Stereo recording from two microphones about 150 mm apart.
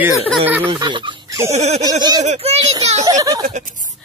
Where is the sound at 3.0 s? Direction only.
25° right (ahead or behind).